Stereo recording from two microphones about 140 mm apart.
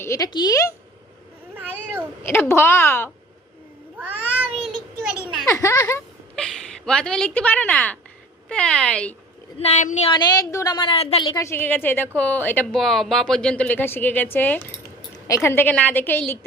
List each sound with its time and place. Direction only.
0.0 s a woman's voice: 20° left (ahead or behind)
2.2 s a woman's voice: 15° left (ahead or behind)
3.9 s cat: 10° right (ahead or behind)
5.5 s speech: 20° left (ahead or behind)
6.3 s a woman's voice: 5° left (ahead or behind)
9.6 s speech: 55° left (ahead or behind)
10.2 s a woman's voice: 25° left (ahead or behind); by 11.3 s 45° left (ahead or behind)
11.3 s a woman's voice: 20° left (ahead or behind)
12.7 s a woman's voice: centre (ahead or behind)